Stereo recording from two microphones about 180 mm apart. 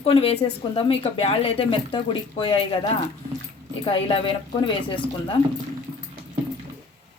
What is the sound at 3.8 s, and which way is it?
Speech, 30° left (ahead or behind).